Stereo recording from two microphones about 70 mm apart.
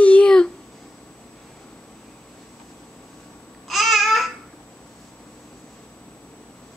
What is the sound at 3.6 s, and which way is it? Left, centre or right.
Babbling, centre.